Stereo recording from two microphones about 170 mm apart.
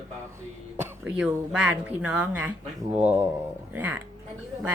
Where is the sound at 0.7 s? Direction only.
5° right (ahead or behind).